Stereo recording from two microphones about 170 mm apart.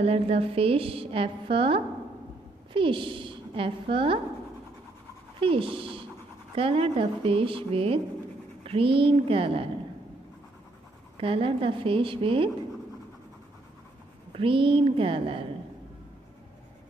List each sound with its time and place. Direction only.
0.0 s a woman's voice: 35° right (ahead or behind)
5.4 s a woman's voice: 30° right (ahead or behind)
11.1 s a woman's voice: 30° right (ahead or behind)
14.3 s a woman's voice: 30° right (ahead or behind)